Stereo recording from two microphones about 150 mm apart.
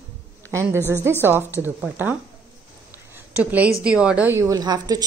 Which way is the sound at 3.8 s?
5° right (ahead or behind).